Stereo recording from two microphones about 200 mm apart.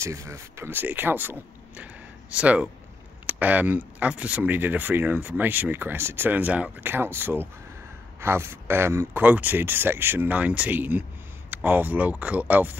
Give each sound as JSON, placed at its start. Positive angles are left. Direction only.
{"t": 0.0, "sound": "speech", "side_deg": -15}